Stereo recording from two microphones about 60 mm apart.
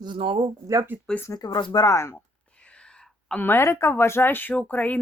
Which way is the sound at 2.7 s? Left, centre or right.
Centre.